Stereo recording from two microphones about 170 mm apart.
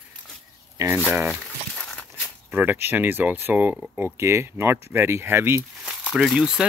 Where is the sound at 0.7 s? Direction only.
15° right (ahead or behind).